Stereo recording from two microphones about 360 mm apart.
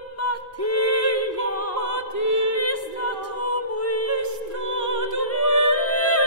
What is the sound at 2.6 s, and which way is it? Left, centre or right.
A capella, left.